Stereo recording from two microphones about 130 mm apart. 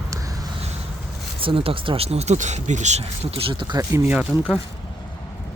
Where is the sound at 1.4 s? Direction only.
45° right (ahead or behind).